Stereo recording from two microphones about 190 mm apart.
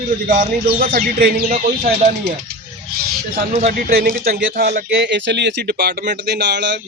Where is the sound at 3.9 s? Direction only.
50° right (ahead or behind); by 6.8 s 65° right (ahead or behind).